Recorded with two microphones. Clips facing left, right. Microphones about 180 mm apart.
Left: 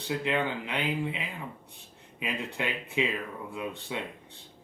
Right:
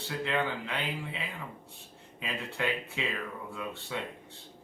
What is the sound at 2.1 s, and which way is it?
Speech, 15° left (ahead or behind).